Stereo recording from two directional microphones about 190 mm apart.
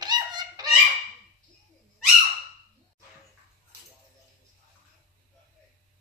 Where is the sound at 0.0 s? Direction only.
20° right (ahead or behind).